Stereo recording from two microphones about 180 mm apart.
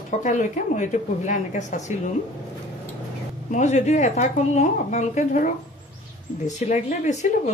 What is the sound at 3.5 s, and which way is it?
Speech, 40° left (ahead or behind).